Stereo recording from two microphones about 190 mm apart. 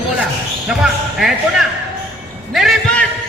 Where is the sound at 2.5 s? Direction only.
Centre (ahead or behind).